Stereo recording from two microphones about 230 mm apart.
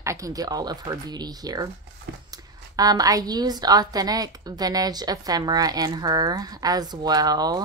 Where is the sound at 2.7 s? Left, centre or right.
Centre.